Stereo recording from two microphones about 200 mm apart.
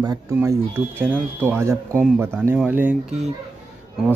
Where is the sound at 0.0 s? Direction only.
20° right (ahead or behind).